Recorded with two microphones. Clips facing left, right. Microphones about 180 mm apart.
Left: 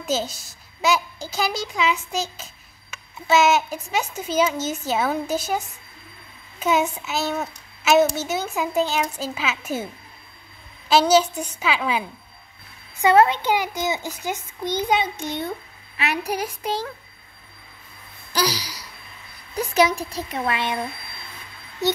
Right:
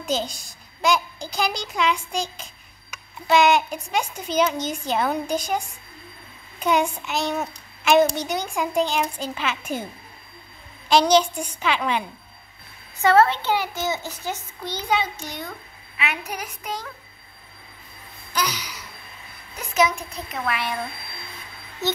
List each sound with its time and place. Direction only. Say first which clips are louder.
0.0 s a child's voice: left 1 dB; 5° left (ahead or behind)
6.6 s a child's voice: even; 5° left (ahead or behind)
10.9 s a child's voice: even; 5° left (ahead or behind)
13.0 s a child's voice: left 1 dB; 15° left (ahead or behind)
16.0 s speech: left 5 dB; 35° left (ahead or behind)
18.3 s a sound: left 3 dB; 35° left (ahead or behind)
19.7 s speech: left 2 dB; 35° left (ahead or behind)